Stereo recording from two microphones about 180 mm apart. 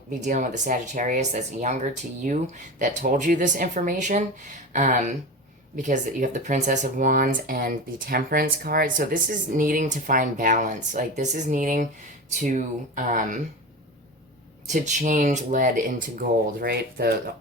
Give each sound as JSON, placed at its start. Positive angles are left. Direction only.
{"t": 0.1, "sound": "speech", "side_deg": -40}
{"t": 14.7, "sound": "speech", "side_deg": -45}
{"t": 16.6, "sound": "speech", "side_deg": -60}